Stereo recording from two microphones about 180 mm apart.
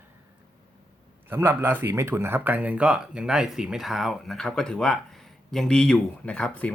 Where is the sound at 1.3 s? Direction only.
10° right (ahead or behind).